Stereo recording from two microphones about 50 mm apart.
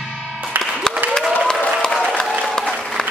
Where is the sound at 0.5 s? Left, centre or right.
Right.